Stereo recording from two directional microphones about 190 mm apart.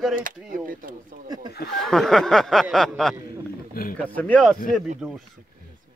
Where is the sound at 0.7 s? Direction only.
45° right (ahead or behind).